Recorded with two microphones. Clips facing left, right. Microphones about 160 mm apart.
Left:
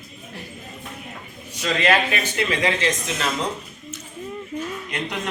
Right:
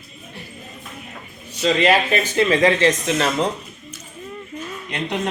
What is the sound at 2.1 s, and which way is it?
Speech, 35° right (ahead or behind).